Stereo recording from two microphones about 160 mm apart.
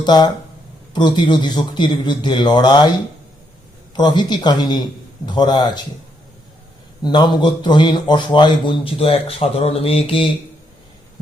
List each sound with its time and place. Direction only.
0.0 s a man's voice: 25° left (ahead or behind)
3.9 s a man's voice: 25° left (ahead or behind)
7.0 s a man's voice: 25° left (ahead or behind)